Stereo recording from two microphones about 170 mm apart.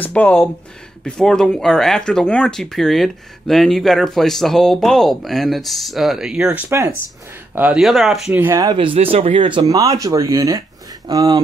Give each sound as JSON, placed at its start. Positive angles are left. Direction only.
{"t": 0.0, "sound": "speech", "side_deg": 10}
{"t": 8.5, "sound": "speech", "side_deg": -25}